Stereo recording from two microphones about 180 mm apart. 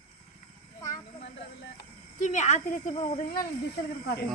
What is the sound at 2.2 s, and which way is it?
A woman's voice, 40° left (ahead or behind).